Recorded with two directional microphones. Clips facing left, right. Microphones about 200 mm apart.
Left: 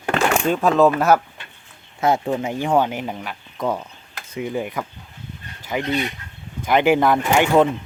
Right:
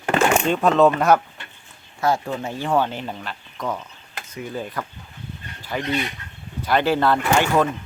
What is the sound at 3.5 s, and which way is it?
Speech, 25° left (ahead or behind).